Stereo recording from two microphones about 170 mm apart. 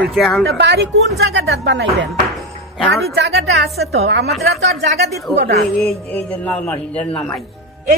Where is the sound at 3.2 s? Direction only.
90° right.